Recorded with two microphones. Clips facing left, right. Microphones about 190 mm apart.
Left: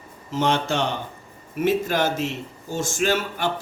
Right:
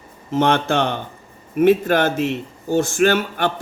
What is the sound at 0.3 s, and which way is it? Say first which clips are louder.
A man's voice: right 5 dB; 55° right (ahead or behind).